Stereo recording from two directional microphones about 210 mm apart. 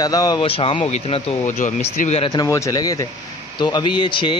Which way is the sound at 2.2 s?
15° left (ahead or behind).